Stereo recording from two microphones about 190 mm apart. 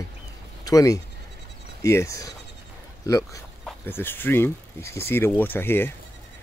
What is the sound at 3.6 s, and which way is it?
Speech, 10° left (ahead or behind).